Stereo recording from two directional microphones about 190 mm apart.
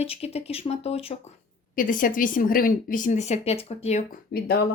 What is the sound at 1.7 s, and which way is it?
A woman's voice, 45° left (ahead or behind).